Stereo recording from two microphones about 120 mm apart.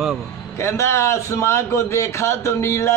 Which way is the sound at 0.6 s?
25° left (ahead or behind).